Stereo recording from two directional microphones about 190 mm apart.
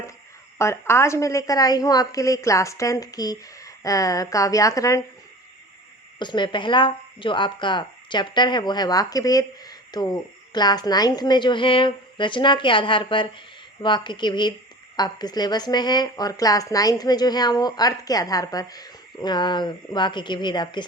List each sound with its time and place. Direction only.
0.6 s a woman's voice: 15° left (ahead or behind)
6.1 s speech: 25° left (ahead or behind)